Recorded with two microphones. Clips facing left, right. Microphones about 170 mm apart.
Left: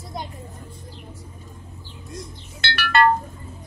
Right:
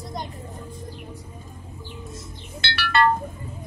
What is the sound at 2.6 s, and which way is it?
Music, 50° left (ahead or behind).